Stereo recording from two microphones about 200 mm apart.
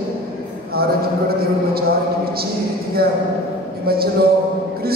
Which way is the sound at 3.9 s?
50° right (ahead or behind).